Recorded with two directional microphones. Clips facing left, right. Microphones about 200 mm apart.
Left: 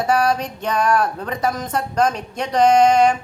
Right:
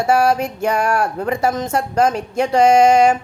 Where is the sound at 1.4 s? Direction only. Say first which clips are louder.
Right 1 dB; 25° right (ahead or behind).